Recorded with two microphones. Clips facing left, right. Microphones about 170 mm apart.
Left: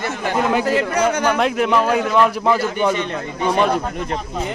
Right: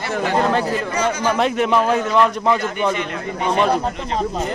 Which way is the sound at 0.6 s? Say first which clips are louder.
Left 3 dB; 70° left (ahead or behind).